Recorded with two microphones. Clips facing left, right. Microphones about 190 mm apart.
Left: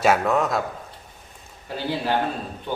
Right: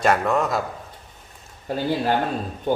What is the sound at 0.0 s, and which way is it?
Speech, 5° left (ahead or behind).